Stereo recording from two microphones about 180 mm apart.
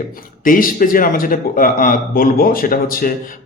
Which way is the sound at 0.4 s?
50° left (ahead or behind).